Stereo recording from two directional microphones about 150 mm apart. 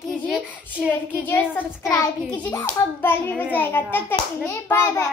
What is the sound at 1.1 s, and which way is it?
A child's voice, 10° left (ahead or behind).